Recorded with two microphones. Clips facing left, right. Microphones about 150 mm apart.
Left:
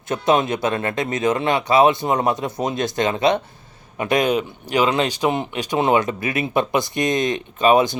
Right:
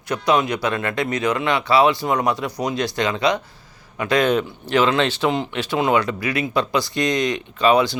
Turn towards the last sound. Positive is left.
turn(degrees=20)  # may be behind; listen again after turning